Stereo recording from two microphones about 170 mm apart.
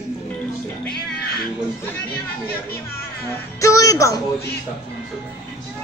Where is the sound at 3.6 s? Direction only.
20° left (ahead or behind).